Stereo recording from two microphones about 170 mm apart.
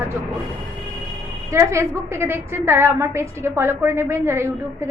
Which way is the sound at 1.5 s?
15° right (ahead or behind).